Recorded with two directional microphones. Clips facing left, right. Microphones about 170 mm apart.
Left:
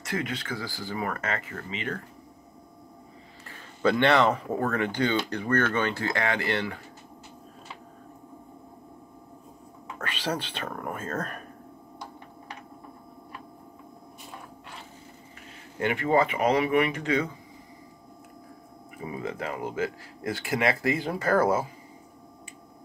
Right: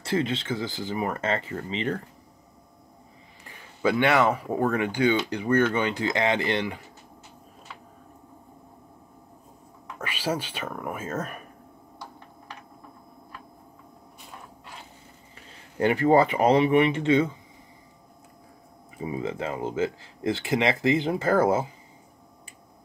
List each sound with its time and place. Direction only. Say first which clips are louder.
0.0 s speech: right 5 dB; 30° right (ahead or behind)
3.4 s speech: even; 10° right (ahead or behind)
9.9 s speech: right 2 dB; 10° right (ahead or behind)
15.8 s speech: right 4 dB; 35° right (ahead or behind)
19.0 s speech: right 3 dB; 25° right (ahead or behind)